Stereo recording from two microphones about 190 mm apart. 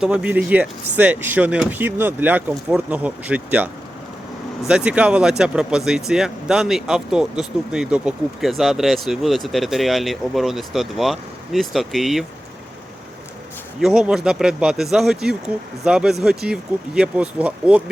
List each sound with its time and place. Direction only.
0.0 s speech: 5° right (ahead or behind)
4.7 s speech: 5° right (ahead or behind)
13.7 s speech: 5° right (ahead or behind)